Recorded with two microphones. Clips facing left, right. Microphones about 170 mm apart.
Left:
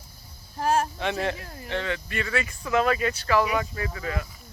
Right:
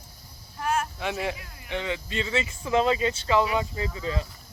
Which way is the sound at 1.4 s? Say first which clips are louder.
Left 7 dB; 40° left (ahead or behind).